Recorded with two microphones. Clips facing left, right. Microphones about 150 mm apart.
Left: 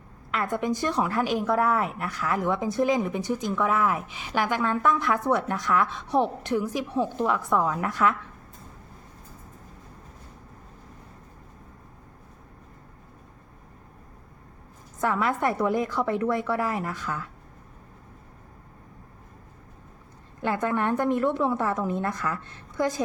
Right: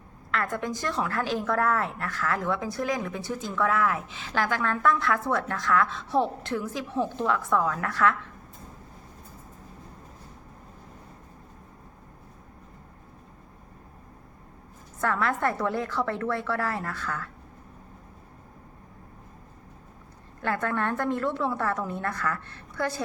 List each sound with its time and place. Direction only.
0.3 s a woman's voice: 15° left (ahead or behind)
15.0 s a woman's voice: 15° left (ahead or behind)
20.4 s a woman's voice: 15° left (ahead or behind)